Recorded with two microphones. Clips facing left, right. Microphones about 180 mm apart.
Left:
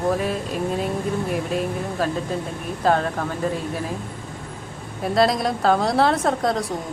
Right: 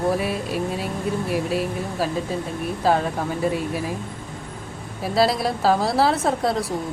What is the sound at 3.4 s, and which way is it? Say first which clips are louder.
Speech: right 2 dB; 10° right (ahead or behind).